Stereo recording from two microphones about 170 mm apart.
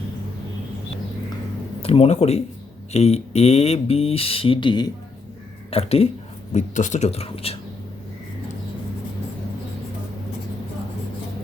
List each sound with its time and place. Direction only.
1.8 s speech: 35° left (ahead or behind)